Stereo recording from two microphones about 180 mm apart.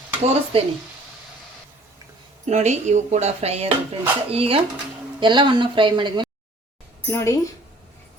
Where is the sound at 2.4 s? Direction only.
40° right (ahead or behind).